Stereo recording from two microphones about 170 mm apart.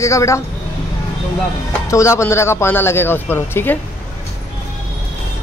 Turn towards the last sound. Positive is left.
turn(degrees=10)  # may be behind; listen again after turning